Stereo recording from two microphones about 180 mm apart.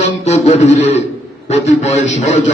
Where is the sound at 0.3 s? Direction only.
40° left (ahead or behind).